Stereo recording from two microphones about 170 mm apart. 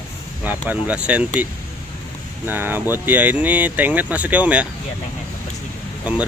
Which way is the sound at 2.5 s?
10° right (ahead or behind).